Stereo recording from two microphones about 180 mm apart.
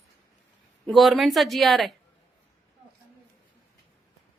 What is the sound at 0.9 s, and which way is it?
Speech, centre (ahead or behind).